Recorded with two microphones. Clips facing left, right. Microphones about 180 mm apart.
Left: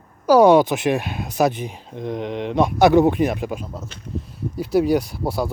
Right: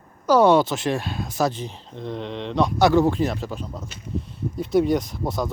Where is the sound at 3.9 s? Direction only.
5° right (ahead or behind).